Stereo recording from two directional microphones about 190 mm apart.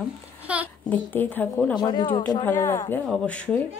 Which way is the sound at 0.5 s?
5° right (ahead or behind).